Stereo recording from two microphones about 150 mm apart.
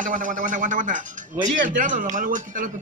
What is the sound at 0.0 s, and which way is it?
Speech, 60° right (ahead or behind).